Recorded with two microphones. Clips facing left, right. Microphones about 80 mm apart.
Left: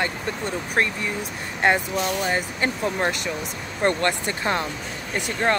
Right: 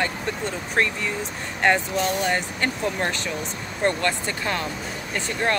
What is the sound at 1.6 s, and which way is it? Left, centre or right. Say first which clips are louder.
Speech: even; centre.